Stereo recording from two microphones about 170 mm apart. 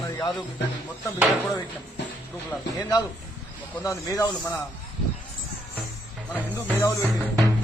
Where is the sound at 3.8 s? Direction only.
20° left (ahead or behind).